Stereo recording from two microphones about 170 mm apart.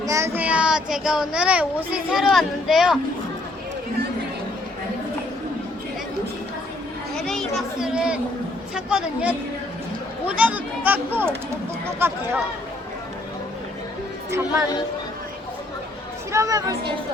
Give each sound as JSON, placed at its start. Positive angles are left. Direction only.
{"t": 0.0, "sound": "a child's voice", "side_deg": -15}
{"t": 7.2, "sound": "a sound", "side_deg": 5}
{"t": 8.7, "sound": "a woman's voice", "side_deg": -5}
{"t": 14.3, "sound": "speech", "side_deg": -15}
{"t": 16.3, "sound": "speech", "side_deg": -20}